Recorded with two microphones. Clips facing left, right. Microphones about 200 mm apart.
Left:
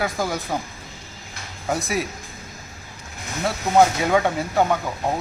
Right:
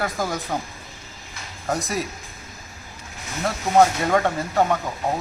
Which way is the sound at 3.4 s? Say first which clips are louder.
Even; 5° left (ahead or behind).